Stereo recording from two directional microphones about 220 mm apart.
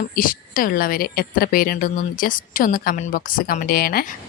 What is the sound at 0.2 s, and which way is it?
A woman's voice, 40° left (ahead or behind).